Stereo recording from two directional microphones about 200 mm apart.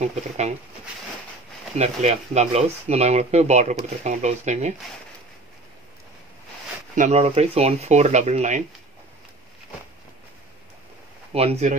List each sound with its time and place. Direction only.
0.0 s speech: 35° right (ahead or behind)
1.8 s speech: 35° right (ahead or behind)
7.0 s speech: 30° right (ahead or behind)
11.3 s speech: 30° right (ahead or behind)